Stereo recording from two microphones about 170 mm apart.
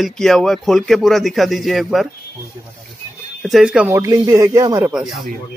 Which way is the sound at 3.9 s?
20° right (ahead or behind).